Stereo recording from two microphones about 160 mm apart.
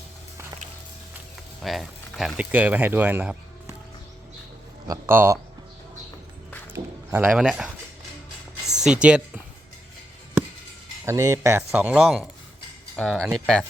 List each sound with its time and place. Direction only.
1.6 s speech: centre (ahead or behind)
4.9 s speech: 15° right (ahead or behind)
6.7 s speech: 10° right (ahead or behind)
8.8 s speech: 5° right (ahead or behind)
11.0 s speech: 20° right (ahead or behind); by 13.7 s 5° left (ahead or behind)